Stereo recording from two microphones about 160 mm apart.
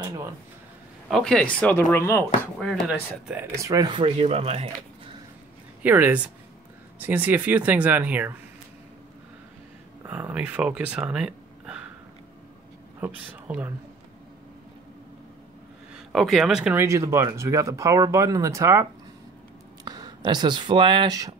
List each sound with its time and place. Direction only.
1.1 s speech: 5° left (ahead or behind)
2.6 s speech: centre (ahead or behind)
3.5 s speech: 20° right (ahead or behind); by 4.6 s 40° right (ahead or behind)
5.8 s speech: 10° right (ahead or behind)
10.0 s speech: 10° right (ahead or behind)
13.0 s speech: 10° right (ahead or behind)
16.1 s speech: centre (ahead or behind)
16.7 s speech: 20° right (ahead or behind)